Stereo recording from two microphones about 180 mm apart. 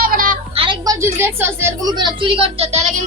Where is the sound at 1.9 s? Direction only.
25° right (ahead or behind).